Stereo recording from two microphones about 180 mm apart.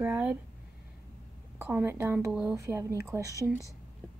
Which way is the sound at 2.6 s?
15° right (ahead or behind).